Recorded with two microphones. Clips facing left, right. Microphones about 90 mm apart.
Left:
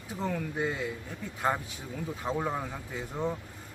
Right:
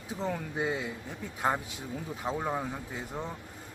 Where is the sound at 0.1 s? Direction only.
Centre (ahead or behind).